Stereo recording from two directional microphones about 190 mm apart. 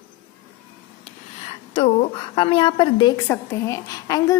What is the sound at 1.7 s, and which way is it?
A woman's voice, 30° left (ahead or behind).